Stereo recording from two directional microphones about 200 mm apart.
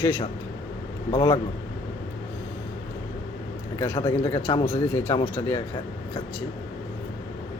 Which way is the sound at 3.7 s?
15° left (ahead or behind).